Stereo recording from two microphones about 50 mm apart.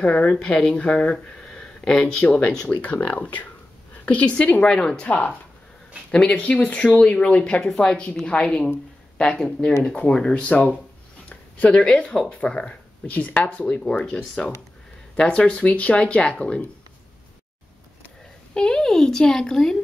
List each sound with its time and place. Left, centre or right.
0.0 s speech: left
2.2 s a woman's voice: left
5.0 s speech: left
9.8 s speech: left
10.1 s speech: centre
10.4 s speech: left
11.2 s a sound: left
11.8 s speech: centre
13.0 s speech: left
18.5 s speech: centre